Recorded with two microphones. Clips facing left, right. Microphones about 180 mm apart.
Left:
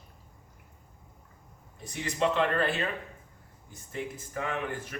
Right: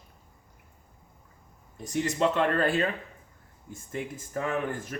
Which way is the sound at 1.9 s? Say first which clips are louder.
Right 3 dB; 45° right (ahead or behind).